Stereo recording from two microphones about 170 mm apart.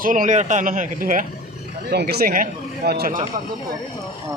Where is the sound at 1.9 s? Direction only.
70° right (ahead or behind).